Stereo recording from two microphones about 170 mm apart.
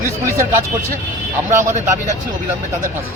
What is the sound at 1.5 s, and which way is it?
Speech, 15° right (ahead or behind).